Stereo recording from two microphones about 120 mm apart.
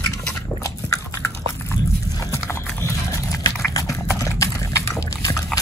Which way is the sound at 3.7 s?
30° left (ahead or behind).